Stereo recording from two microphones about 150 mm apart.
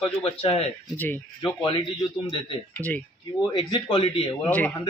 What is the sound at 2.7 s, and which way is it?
Speech, 10° left (ahead or behind).